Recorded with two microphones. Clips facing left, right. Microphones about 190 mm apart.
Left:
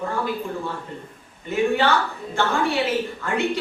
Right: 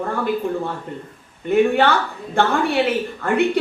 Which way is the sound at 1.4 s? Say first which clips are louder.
Right 5 dB; 60° right (ahead or behind).